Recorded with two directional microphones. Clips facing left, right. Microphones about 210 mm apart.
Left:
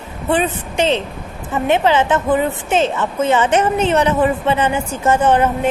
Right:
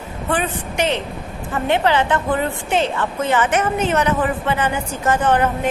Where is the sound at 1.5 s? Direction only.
20° left (ahead or behind).